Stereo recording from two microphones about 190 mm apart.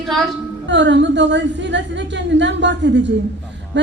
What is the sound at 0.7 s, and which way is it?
A woman's voice, 70° right (ahead or behind).